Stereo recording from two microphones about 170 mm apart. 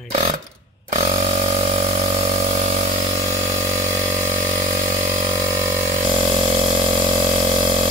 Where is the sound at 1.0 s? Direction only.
35° right (ahead or behind).